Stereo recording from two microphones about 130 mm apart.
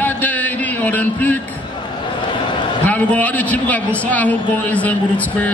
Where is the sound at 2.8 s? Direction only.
10° left (ahead or behind).